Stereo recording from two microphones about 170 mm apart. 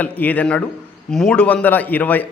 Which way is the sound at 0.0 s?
10° left (ahead or behind).